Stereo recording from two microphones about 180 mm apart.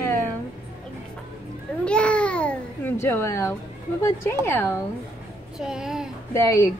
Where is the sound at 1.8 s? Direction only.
5° left (ahead or behind).